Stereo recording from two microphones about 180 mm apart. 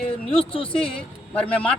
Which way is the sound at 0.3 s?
30° left (ahead or behind).